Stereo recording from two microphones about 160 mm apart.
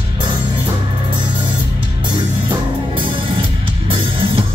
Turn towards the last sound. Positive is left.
turn(degrees=-35)  # may be behind; listen again after turning